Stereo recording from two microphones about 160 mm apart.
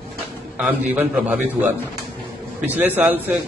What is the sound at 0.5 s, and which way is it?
Speech, 10° right (ahead or behind).